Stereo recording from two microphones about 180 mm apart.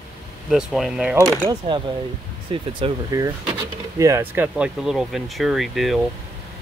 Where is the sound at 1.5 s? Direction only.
25° right (ahead or behind); by 6.0 s centre (ahead or behind).